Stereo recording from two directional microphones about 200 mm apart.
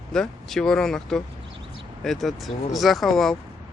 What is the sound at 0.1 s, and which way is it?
Speech, 5° left (ahead or behind).